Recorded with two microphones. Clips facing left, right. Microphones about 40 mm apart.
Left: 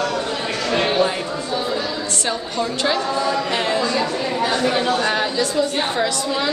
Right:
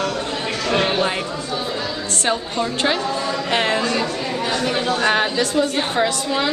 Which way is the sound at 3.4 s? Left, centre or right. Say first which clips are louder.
Right 1 dB; right.